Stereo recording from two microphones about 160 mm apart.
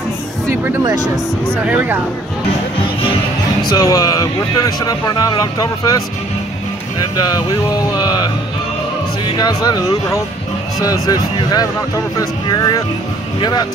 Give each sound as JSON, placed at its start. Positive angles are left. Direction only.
{"t": 1.5, "sound": "speech", "side_deg": -10}
{"t": 3.6, "sound": "speech", "side_deg": 25}
{"t": 7.2, "sound": "speech", "side_deg": 25}